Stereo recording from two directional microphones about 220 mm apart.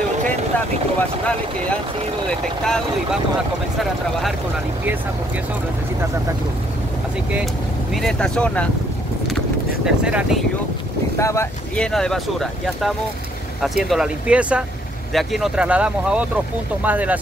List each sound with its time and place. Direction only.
2.2 s speech: 5° left (ahead or behind)
7.9 s speech: centre (ahead or behind)
9.8 s speech: 5° right (ahead or behind)
11.1 s speech: 10° left (ahead or behind); by 17.2 s 5° right (ahead or behind)